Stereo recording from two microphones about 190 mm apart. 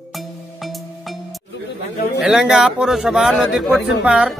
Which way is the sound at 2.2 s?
5° right (ahead or behind).